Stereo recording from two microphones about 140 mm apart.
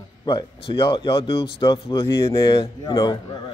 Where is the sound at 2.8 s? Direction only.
30° left (ahead or behind).